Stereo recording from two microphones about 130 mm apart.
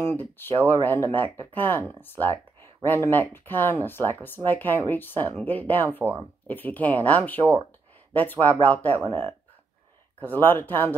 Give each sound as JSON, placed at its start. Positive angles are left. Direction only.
{"t": 0.0, "sound": "speech", "side_deg": 15}
{"t": 10.2, "sound": "speech", "side_deg": 15}